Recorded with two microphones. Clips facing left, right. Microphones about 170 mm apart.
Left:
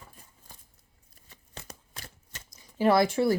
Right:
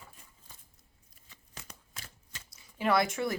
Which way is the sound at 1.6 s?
35° left (ahead or behind).